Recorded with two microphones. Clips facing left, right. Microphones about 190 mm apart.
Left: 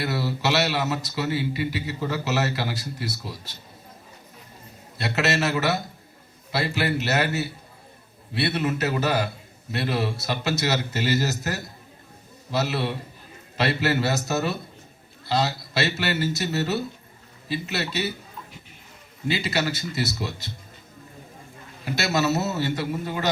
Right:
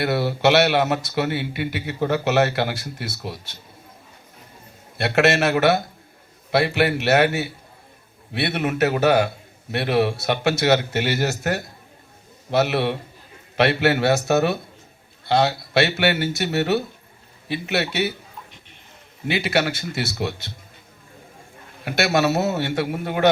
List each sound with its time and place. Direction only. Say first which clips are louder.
0.0 s a man's voice: right 7 dB; 60° right (ahead or behind)
4.9 s a man's voice: right 6 dB; 60° right (ahead or behind)
19.3 s a man's voice: right 4 dB; 60° right (ahead or behind)
21.8 s a man's voice: right 4 dB; 55° right (ahead or behind)